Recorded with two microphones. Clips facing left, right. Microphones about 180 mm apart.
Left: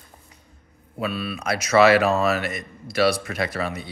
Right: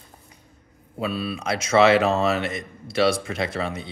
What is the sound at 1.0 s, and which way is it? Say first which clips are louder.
A man's voice: right 1 dB; 25° right (ahead or behind).